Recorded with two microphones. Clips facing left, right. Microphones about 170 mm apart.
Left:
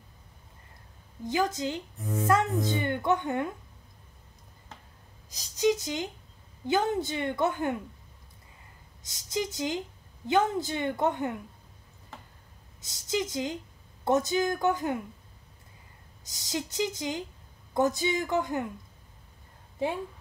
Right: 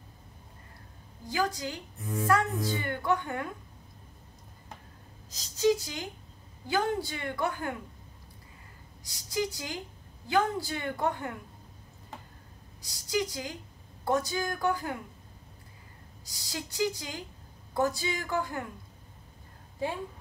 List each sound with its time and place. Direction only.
1.2 s a woman's voice: 20° left (ahead or behind)
5.3 s a woman's voice: 20° left (ahead or behind)
9.0 s a woman's voice: 20° left (ahead or behind)
12.8 s a woman's voice: 20° left (ahead or behind)
16.3 s a woman's voice: 20° left (ahead or behind)